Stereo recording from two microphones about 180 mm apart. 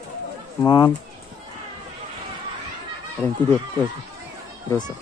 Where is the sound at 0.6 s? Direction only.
20° left (ahead or behind).